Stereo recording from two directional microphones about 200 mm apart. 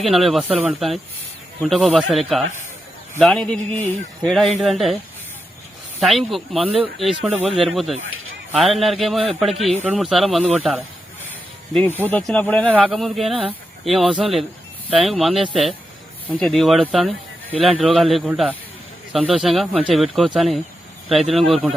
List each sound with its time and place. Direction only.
0.0 s speech: centre (ahead or behind)
6.0 s speech: centre (ahead or behind)
8.0 s a sound: 90° right
8.5 s speech: centre (ahead or behind)
12.7 s speech: 5° right (ahead or behind)